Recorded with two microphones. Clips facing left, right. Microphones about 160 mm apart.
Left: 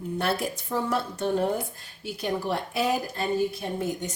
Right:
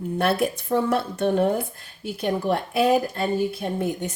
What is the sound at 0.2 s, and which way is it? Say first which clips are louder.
Speech: right 6 dB; 60° right (ahead or behind).